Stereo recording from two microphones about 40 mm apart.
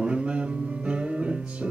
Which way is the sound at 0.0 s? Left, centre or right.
Right.